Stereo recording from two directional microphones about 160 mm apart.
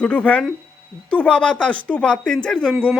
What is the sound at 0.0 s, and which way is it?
Speech, 10° left (ahead or behind).